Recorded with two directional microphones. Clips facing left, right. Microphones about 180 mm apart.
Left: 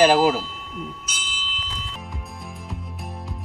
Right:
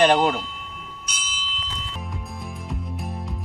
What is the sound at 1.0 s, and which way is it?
Music, centre (ahead or behind).